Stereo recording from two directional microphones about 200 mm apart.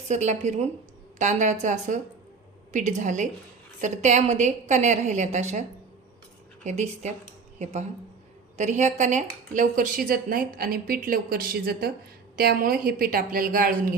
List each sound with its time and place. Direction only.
0.1 s a woman's voice: 35° right (ahead or behind)
6.7 s a woman's voice: 35° right (ahead or behind)